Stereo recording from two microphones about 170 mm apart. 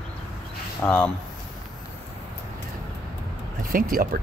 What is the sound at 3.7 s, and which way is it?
Speech, 55° right (ahead or behind).